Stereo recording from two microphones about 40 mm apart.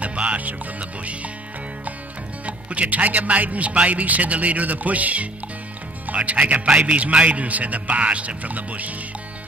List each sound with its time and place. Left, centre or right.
0.0 s speech: right
2.4 s speech: right